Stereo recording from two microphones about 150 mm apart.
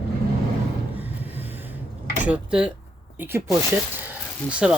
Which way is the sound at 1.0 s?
10° right (ahead or behind).